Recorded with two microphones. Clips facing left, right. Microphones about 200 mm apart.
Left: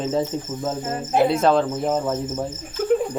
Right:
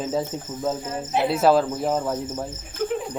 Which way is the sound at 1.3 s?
5° right (ahead or behind).